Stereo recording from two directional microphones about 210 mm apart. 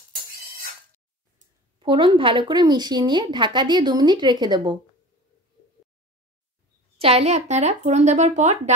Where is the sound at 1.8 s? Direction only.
25° right (ahead or behind).